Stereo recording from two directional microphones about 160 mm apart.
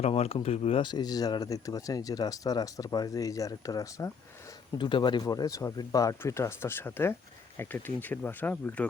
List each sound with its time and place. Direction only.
0.0 s speech: 40° left (ahead or behind); by 8.9 s 10° left (ahead or behind)